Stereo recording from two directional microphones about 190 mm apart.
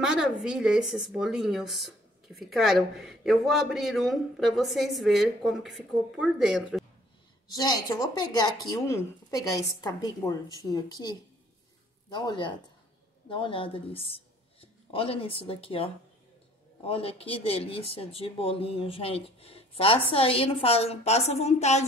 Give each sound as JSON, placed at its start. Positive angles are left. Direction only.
{"t": 0.0, "sound": "a woman's voice", "side_deg": -5}
{"t": 7.5, "sound": "a woman's voice", "side_deg": 20}